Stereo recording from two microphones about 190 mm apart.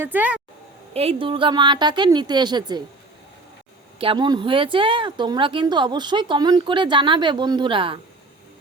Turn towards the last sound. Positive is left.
turn(degrees=-25)  # may be behind; listen again after turning